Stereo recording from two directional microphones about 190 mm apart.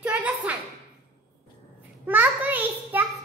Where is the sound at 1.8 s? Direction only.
10° right (ahead or behind).